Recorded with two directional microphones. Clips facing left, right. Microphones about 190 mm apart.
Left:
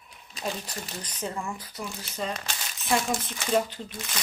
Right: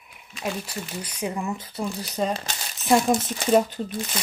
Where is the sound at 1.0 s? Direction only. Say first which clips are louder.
Right 5 dB; 10° right (ahead or behind).